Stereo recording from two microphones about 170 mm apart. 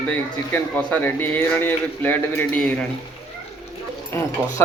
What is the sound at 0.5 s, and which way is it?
Speech, 10° left (ahead or behind).